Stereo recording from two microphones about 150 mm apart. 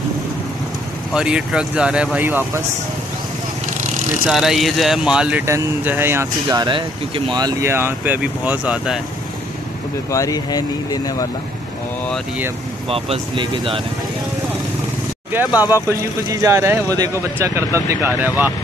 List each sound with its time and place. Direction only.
1.1 s speech: 5° right (ahead or behind)
4.3 s speech: centre (ahead or behind)
6.5 s speech: 30° right (ahead or behind)
7.7 s speech: 15° right (ahead or behind)
10.1 s speech: 25° left (ahead or behind)
12.9 s speech: 40° right (ahead or behind)
15.3 s speech: 10° right (ahead or behind)